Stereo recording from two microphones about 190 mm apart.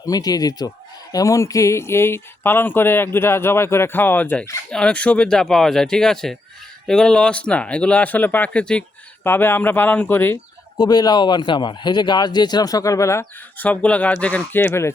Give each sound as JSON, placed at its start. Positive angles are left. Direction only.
{"t": 0.0, "sound": "speech", "side_deg": 20}